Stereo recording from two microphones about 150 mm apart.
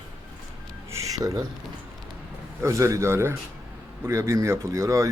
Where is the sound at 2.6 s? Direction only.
20° right (ahead or behind).